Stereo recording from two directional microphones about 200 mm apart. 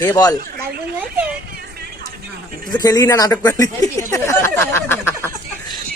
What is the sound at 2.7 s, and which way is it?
Speech, 20° left (ahead or behind).